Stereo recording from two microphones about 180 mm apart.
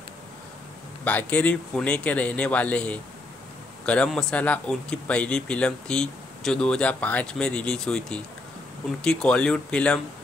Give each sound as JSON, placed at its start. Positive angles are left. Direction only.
{"t": 1.0, "sound": "speech", "side_deg": 5}